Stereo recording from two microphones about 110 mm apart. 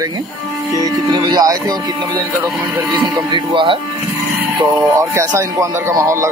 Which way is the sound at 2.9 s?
45° right (ahead or behind).